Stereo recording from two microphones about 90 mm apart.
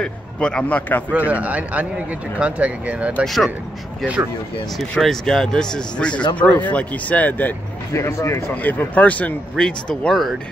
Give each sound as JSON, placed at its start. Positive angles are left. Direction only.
{"t": 0.0, "sound": "speech", "side_deg": 10}
{"t": 1.1, "sound": "speech", "side_deg": -15}
{"t": 3.3, "sound": "speech", "side_deg": 0}
{"t": 4.7, "sound": "speech", "side_deg": 5}
{"t": 7.9, "sound": "speech", "side_deg": 30}
{"t": 8.6, "sound": "speech", "side_deg": 20}